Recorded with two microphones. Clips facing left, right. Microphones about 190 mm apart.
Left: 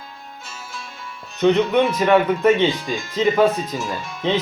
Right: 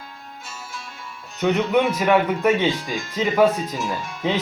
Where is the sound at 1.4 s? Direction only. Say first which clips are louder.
Left 3 dB; 10° right (ahead or behind).